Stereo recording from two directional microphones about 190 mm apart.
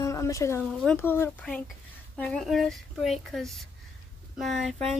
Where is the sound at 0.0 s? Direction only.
15° left (ahead or behind).